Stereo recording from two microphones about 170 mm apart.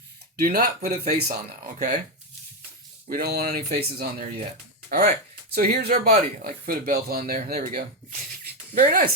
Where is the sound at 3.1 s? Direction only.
65° right (ahead or behind).